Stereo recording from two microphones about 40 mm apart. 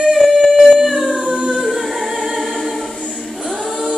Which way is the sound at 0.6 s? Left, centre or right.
Centre.